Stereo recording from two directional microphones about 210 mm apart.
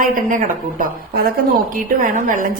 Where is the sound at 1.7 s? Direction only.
40° right (ahead or behind).